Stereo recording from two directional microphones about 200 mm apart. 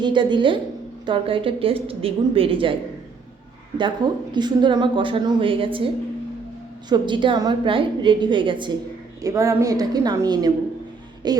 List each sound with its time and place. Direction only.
0.0 s speech: 25° right (ahead or behind)
3.8 s a woman's voice: 20° right (ahead or behind)